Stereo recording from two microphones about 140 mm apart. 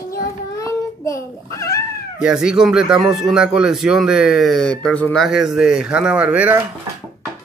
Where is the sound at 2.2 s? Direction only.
5° right (ahead or behind).